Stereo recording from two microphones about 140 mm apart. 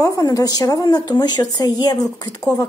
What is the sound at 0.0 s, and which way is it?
Speech, 25° left (ahead or behind).